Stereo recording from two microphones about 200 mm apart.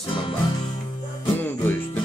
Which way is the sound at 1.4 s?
10° left (ahead or behind).